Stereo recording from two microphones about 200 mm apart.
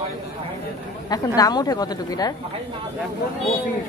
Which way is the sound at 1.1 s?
20° left (ahead or behind).